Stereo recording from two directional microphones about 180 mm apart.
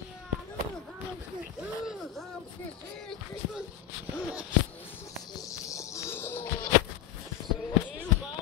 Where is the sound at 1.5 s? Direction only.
Centre (ahead or behind).